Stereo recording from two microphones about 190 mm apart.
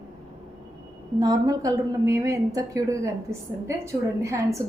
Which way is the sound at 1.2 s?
20° right (ahead or behind).